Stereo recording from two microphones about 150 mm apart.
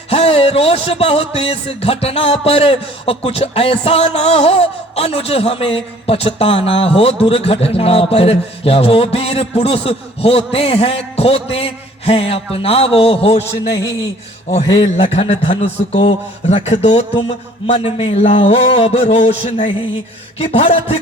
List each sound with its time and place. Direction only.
0.1 s music: 40° left (ahead or behind)
14.5 s a man's voice: 45° left (ahead or behind)
20.4 s music: 40° left (ahead or behind)